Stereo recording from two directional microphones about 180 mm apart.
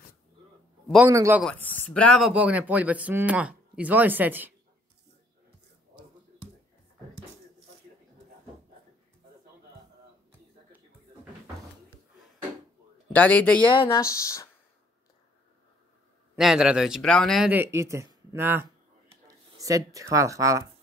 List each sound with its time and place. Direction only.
0.8 s a man's voice: 5° right (ahead or behind)
1.4 s speech: 5° left (ahead or behind); by 4.6 s 10° right (ahead or behind)
13.1 s speech: 5° left (ahead or behind)
16.3 s a man's voice: 5° right (ahead or behind)
17.5 s speech: 15° right (ahead or behind)